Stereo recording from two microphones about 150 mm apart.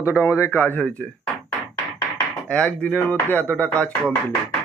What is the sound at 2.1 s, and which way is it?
Speech, 5° left (ahead or behind).